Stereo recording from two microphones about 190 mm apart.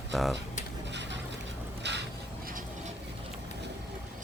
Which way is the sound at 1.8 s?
65° right (ahead or behind).